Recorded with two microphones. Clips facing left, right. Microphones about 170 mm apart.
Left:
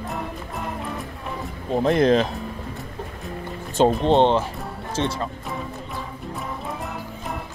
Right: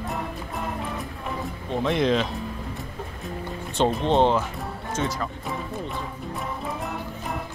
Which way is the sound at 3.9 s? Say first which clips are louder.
Left 3 dB; centre (ahead or behind).